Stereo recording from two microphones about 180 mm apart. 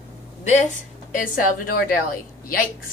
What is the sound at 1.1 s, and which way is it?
Speech, 50° left (ahead or behind).